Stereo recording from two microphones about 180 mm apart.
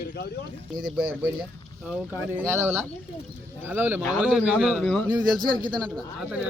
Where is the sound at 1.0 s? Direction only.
5° right (ahead or behind).